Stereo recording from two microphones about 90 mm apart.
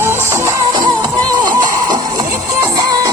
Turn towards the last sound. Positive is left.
turn(degrees=-50)  # may be behind; listen again after turning